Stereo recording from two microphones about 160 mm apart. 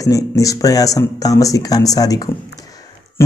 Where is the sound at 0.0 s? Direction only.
20° left (ahead or behind).